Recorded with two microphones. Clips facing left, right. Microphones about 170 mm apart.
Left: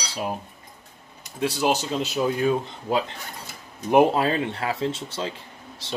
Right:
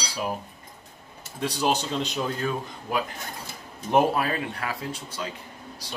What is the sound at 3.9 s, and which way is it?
Speech, 15° left (ahead or behind).